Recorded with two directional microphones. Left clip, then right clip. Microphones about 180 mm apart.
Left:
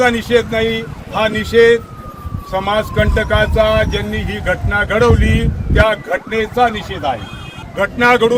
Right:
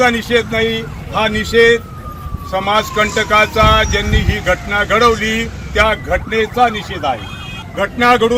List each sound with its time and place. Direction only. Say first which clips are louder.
0.0 s speech: even; 20° left (ahead or behind)